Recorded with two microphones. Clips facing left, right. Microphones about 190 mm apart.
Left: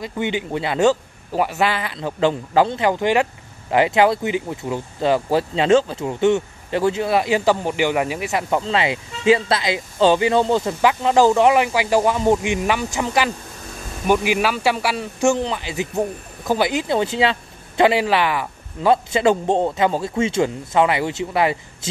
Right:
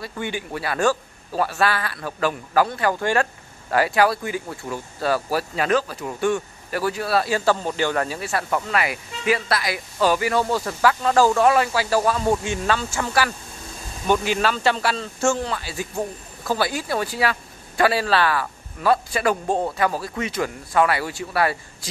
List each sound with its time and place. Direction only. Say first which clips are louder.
0.0 s speech: left 5 dB; 20° left (ahead or behind)